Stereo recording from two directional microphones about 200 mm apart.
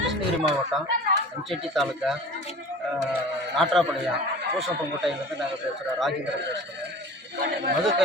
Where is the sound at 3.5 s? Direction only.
Centre (ahead or behind).